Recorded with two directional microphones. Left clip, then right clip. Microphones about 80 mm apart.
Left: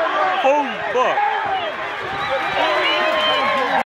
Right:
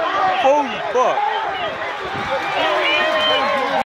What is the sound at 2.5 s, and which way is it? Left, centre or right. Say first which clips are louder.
Run: right 1 dB; right.